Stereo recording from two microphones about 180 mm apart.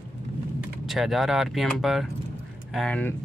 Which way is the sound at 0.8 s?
Centre (ahead or behind).